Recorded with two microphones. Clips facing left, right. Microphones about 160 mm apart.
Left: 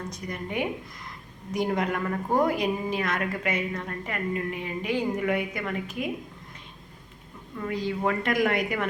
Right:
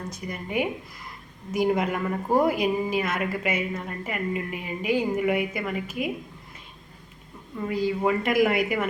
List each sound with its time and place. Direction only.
0.1 s a woman's voice: 5° right (ahead or behind)
7.6 s a woman's voice: 5° right (ahead or behind)